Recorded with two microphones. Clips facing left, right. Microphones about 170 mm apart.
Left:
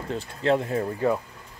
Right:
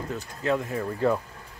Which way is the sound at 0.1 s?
30° left (ahead or behind).